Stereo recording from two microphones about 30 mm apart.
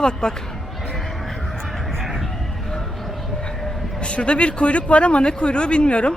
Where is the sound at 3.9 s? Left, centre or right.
Left.